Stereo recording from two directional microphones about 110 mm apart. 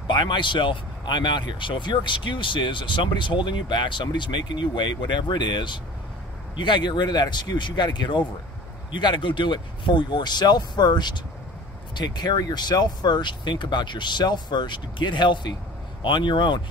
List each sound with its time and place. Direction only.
0.0 s speech: 45° left (ahead or behind)